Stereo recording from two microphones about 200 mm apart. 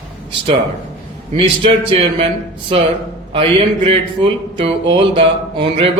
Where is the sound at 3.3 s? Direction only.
25° right (ahead or behind).